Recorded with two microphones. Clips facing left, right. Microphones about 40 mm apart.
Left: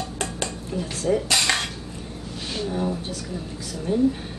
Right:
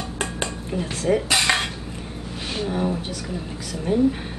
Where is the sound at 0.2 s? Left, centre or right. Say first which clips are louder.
Right 5 dB; right.